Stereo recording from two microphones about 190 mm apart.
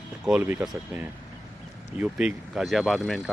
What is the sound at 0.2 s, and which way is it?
Speech, 5° right (ahead or behind).